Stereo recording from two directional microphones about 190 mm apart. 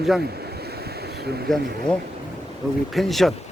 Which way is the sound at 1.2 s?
55° right (ahead or behind).